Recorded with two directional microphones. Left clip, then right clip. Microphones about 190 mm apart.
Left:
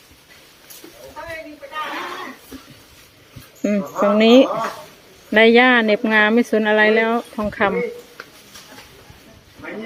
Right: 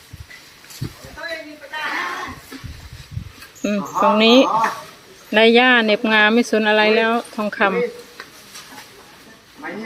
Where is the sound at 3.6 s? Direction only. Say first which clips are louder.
Right 1 dB; 15° left (ahead or behind).